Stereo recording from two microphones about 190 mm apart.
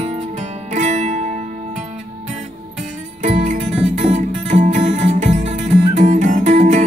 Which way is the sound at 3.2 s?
40° right (ahead or behind).